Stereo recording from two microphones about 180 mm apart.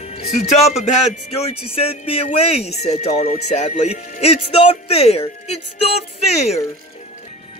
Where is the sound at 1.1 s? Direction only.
35° left (ahead or behind).